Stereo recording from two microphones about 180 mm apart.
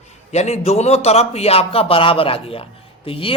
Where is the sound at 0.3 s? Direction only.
40° left (ahead or behind).